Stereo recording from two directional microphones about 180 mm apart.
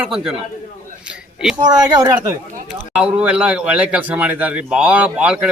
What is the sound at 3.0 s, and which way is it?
Speech, 5° right (ahead or behind).